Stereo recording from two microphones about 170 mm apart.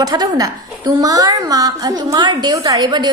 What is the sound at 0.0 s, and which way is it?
A woman's voice, 20° right (ahead or behind).